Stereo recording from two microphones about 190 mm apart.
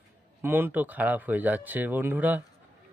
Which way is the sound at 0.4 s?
10° right (ahead or behind).